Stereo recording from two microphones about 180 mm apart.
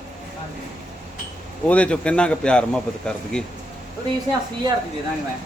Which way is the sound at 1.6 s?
5° left (ahead or behind).